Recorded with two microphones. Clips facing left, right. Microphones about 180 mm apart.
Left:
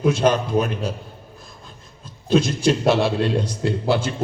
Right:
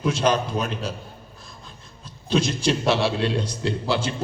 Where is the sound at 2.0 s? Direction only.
50° left (ahead or behind).